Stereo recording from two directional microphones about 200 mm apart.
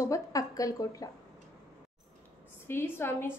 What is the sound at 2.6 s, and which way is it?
Speech, 10° left (ahead or behind).